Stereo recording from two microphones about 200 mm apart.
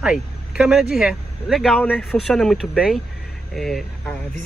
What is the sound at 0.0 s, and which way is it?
Speech, 5° right (ahead or behind).